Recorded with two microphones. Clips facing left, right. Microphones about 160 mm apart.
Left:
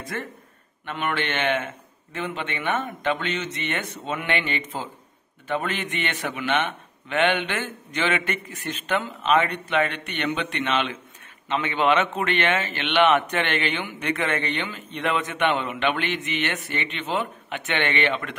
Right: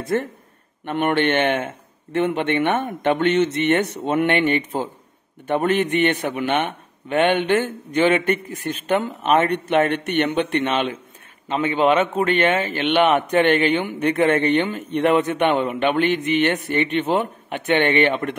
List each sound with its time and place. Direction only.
0.8 s a man's voice: 50° right (ahead or behind)
9.8 s a man's voice: 45° right (ahead or behind)
11.7 s a man's voice: 35° right (ahead or behind)
14.9 s a man's voice: 55° right (ahead or behind)